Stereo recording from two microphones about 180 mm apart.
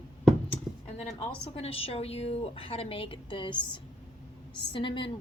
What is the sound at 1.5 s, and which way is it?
A woman's voice, 35° left (ahead or behind).